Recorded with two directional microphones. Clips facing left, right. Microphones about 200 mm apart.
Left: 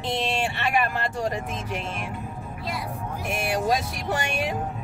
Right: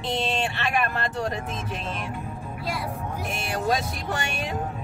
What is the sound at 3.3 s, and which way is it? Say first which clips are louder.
A woman's voice: left 2 dB; 15° left (ahead or behind).